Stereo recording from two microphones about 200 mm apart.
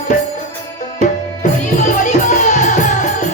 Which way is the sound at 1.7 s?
40° left (ahead or behind).